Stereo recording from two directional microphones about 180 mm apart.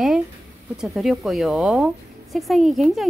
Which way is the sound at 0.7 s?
Centre (ahead or behind).